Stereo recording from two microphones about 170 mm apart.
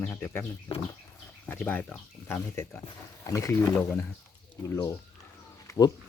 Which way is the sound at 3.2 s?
20° left (ahead or behind).